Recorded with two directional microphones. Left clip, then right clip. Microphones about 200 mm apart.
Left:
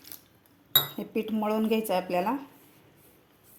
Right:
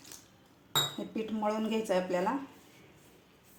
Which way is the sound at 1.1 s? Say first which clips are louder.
Left 7 dB; 45° left (ahead or behind).